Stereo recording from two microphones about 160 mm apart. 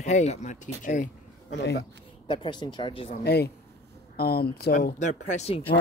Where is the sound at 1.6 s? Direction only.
90° left.